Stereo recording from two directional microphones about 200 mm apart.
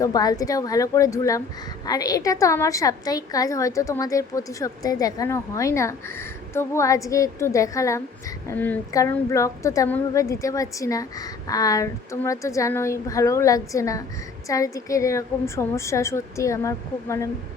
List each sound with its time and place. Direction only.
0.0 s a woman's voice: 20° left (ahead or behind)